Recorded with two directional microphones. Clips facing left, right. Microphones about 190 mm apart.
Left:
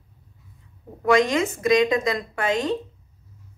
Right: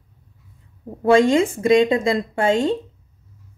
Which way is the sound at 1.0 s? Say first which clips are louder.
Right 5 dB; 30° right (ahead or behind).